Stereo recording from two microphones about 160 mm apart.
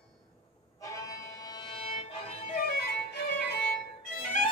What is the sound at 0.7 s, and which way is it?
Music, 20° left (ahead or behind).